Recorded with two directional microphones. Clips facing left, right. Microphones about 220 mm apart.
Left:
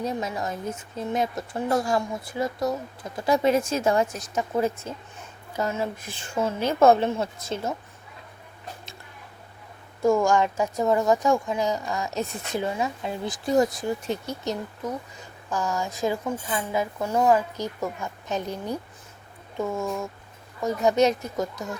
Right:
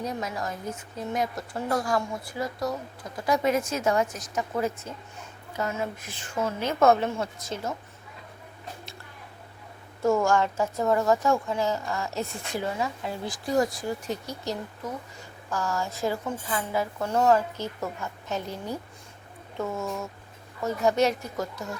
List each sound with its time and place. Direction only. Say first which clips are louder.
0.0 s speech: left 3 dB; 25° left (ahead or behind)
10.0 s a woman's voice: left 2 dB; 15° left (ahead or behind)
20.7 s speech: left 3 dB; 20° left (ahead or behind)